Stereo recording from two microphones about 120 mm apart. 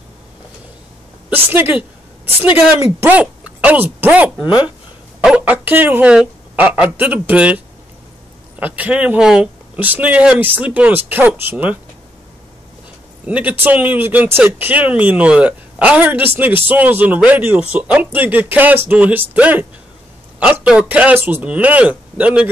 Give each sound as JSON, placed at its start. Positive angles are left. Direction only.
{"t": 1.3, "sound": "speech", "side_deg": -15}
{"t": 3.0, "sound": "a woman's voice", "side_deg": -15}
{"t": 13.2, "sound": "speech", "side_deg": -10}